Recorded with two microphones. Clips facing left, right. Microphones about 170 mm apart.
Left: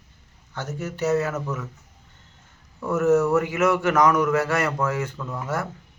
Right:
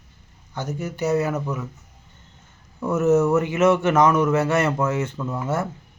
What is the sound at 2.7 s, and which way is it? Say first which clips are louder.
A man's voice: right 1 dB; 20° right (ahead or behind).